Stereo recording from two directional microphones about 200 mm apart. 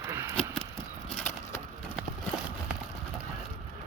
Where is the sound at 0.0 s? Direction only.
10° right (ahead or behind).